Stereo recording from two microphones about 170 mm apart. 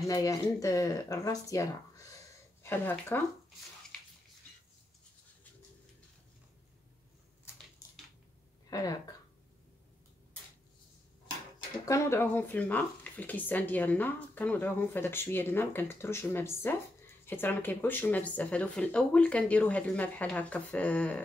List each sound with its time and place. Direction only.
0.0 s speech: 20° left (ahead or behind)
8.6 s speech: 20° left (ahead or behind)
11.8 s speech: 15° left (ahead or behind)